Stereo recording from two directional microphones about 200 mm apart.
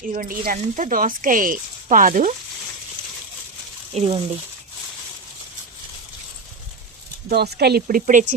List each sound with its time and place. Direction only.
0.1 s speech: 45° right (ahead or behind)
3.9 s speech: 30° right (ahead or behind)
7.3 s speech: 55° right (ahead or behind); by 8.4 s 40° right (ahead or behind)